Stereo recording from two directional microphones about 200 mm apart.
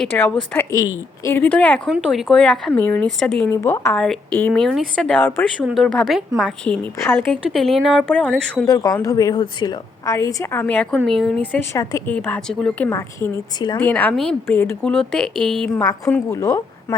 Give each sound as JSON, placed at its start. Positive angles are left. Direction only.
{"t": 0.0, "sound": "a woman's voice", "side_deg": 10}
{"t": 8.6, "sound": "a woman's voice", "side_deg": 20}
{"t": 11.5, "sound": "a woman's voice", "side_deg": 15}
{"t": 12.9, "sound": "a woman's voice", "side_deg": 15}
{"t": 13.7, "sound": "speech", "side_deg": 5}
{"t": 15.8, "sound": "a woman's voice", "side_deg": 15}